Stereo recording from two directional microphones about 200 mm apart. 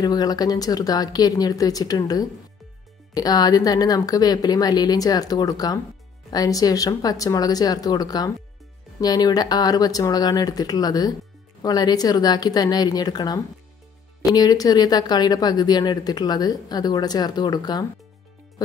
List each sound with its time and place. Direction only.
0.0 s speech: 20° left (ahead or behind)